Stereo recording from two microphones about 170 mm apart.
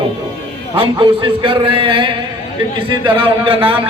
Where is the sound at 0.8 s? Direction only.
30° right (ahead or behind).